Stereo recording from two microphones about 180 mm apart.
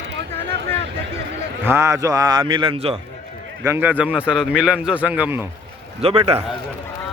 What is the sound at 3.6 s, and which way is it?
A man's voice, 10° right (ahead or behind).